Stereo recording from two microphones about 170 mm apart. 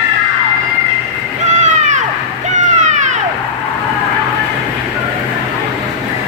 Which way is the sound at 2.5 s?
45° right (ahead or behind).